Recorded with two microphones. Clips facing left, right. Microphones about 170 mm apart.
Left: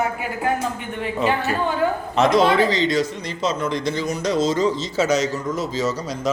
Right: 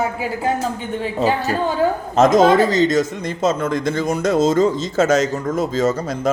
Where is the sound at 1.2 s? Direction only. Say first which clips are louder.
Right 2 dB; 35° right (ahead or behind).